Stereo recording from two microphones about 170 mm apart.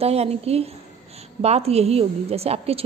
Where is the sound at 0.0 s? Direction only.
35° right (ahead or behind).